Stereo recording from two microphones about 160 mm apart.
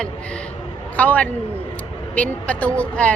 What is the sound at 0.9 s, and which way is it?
A woman's voice, 10° left (ahead or behind).